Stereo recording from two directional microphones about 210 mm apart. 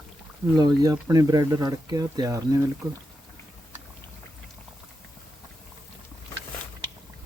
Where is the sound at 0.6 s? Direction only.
20° right (ahead or behind).